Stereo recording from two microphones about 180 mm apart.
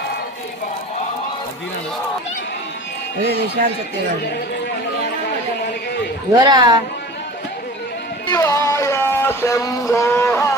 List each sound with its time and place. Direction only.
6.3 s speech: 20° right (ahead or behind)
8.3 s music: 20° left (ahead or behind)